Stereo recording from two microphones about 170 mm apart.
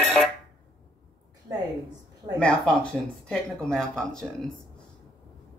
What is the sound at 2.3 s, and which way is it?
Speech, 5° left (ahead or behind).